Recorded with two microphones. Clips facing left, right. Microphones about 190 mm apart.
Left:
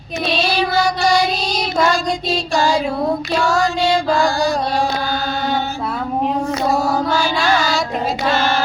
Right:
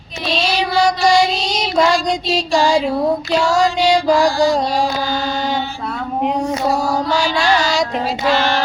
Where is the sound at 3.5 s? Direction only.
20° right (ahead or behind).